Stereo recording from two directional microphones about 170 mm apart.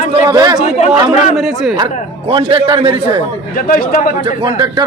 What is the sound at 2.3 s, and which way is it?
Speech, 30° right (ahead or behind).